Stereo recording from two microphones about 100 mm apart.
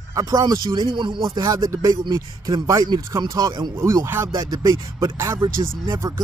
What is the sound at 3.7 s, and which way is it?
Speech, 30° right (ahead or behind).